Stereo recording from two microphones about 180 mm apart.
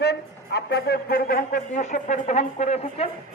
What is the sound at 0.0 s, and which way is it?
Speech, 65° left (ahead or behind).